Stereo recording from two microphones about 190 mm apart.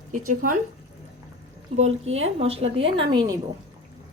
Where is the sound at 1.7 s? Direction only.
35° right (ahead or behind).